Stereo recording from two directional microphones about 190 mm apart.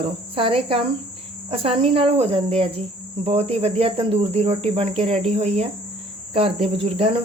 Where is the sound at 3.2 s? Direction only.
30° right (ahead or behind).